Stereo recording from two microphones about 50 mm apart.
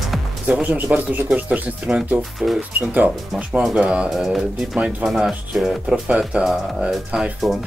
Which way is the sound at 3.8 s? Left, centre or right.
Right.